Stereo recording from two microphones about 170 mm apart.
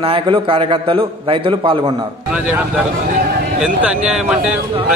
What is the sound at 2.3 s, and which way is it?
Speech, 10° right (ahead or behind).